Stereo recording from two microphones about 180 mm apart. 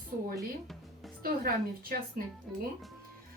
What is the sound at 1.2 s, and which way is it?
Speech, 55° right (ahead or behind).